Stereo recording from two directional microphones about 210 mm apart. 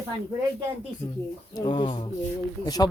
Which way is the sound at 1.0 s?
20° left (ahead or behind).